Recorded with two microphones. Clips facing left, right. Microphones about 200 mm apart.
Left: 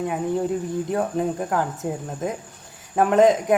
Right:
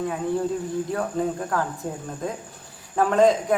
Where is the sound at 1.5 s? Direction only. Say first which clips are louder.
Left 2 dB; 20° left (ahead or behind).